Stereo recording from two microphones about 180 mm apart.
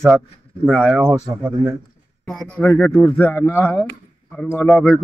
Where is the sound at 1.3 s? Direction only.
20° right (ahead or behind).